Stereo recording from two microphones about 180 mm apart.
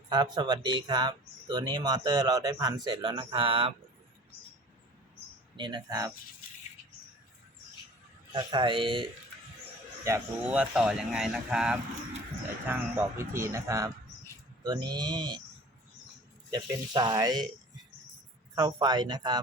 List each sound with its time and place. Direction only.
0.1 s speech: 25° right (ahead or behind)
5.5 s speech: 25° right (ahead or behind)
8.3 s speech: 25° right (ahead or behind)
10.0 s speech: 15° right (ahead or behind)
10.5 s speech: 5° right (ahead or behind); by 15.4 s 25° right (ahead or behind)
16.5 s speech: 25° right (ahead or behind)
18.5 s speech: 20° right (ahead or behind)